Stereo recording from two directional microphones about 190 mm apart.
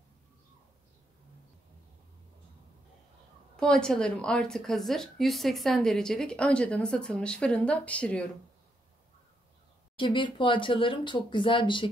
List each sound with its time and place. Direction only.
3.5 s a woman's voice: 5° left (ahead or behind)
9.9 s speech: 25° left (ahead or behind)